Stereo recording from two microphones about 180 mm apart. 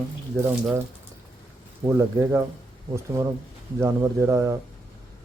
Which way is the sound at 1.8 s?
15° right (ahead or behind).